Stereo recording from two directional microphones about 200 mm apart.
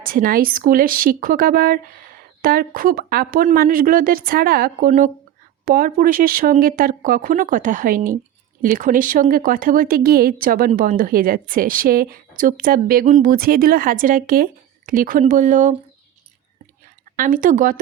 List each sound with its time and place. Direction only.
0.0 s a woman's voice: 45° right (ahead or behind)
17.2 s speech: 40° right (ahead or behind)